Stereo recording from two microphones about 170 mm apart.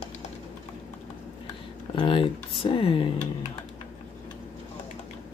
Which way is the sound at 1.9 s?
30° left (ahead or behind).